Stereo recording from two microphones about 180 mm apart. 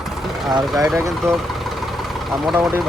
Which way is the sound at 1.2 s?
Centre (ahead or behind).